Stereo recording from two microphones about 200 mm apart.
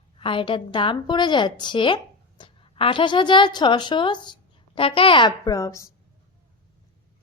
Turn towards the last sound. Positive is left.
turn(degrees=15)  # may be behind; listen again after turning